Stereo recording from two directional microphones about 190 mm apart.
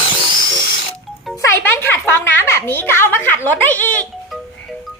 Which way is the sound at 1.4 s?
10° left (ahead or behind).